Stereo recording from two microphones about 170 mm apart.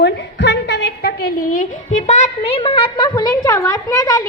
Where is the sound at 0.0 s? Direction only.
85° left.